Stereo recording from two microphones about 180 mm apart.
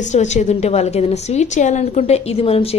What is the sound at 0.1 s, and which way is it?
A woman's voice, 40° left (ahead or behind).